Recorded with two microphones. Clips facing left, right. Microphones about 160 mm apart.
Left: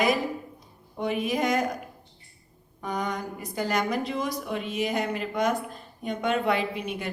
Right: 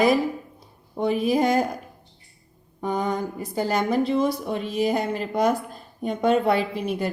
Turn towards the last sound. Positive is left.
turn(degrees=-35)  # may be behind; listen again after turning